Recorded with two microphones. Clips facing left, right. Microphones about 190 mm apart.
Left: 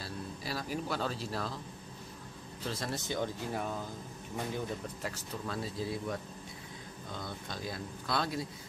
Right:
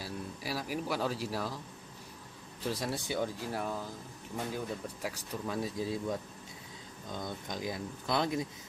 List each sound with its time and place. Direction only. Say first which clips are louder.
0.0 s speech: right 1 dB; 10° right (ahead or behind)
2.6 s speech: right 3 dB; 10° right (ahead or behind)
7.2 s speech: right 4 dB; 15° right (ahead or behind)